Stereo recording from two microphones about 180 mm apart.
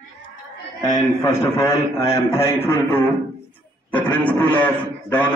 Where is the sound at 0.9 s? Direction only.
20° left (ahead or behind).